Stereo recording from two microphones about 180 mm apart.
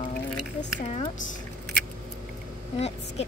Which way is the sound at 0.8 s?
35° left (ahead or behind).